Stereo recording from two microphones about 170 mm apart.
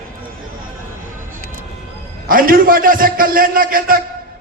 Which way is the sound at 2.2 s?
55° right (ahead or behind).